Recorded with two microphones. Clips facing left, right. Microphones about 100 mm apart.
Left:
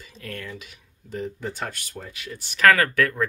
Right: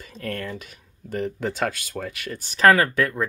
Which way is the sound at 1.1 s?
80° right.